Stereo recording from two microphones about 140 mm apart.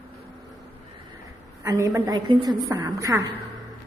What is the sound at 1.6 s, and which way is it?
A woman's voice, 25° right (ahead or behind).